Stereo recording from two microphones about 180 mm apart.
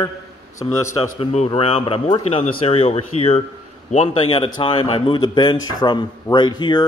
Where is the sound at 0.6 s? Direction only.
30° left (ahead or behind).